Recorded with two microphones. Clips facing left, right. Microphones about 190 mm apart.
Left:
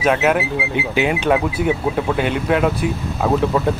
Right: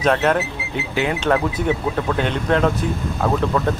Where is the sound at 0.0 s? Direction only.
5° left (ahead or behind).